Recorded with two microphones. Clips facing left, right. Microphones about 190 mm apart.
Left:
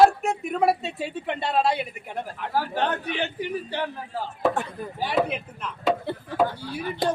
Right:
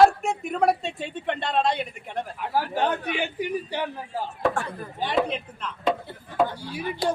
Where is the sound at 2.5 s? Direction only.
10° right (ahead or behind).